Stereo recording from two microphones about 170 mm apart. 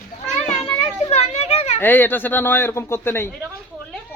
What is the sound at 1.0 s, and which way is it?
Children playing, 40° left (ahead or behind).